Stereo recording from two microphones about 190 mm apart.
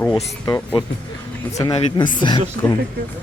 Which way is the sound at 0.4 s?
15° left (ahead or behind).